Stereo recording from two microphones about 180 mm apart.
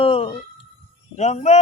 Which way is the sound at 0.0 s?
30° left (ahead or behind).